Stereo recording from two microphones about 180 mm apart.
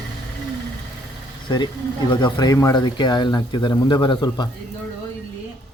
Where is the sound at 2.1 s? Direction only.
25° left (ahead or behind).